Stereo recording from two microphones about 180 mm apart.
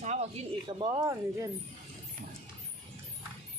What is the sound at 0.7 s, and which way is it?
Speech, 25° right (ahead or behind).